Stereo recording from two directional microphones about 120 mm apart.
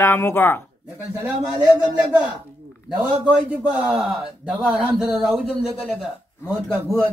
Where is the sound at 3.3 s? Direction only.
10° right (ahead or behind).